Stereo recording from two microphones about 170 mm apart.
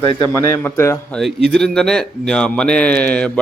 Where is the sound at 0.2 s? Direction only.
15° left (ahead or behind).